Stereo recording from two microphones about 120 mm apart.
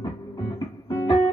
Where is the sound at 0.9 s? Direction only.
30° left (ahead or behind).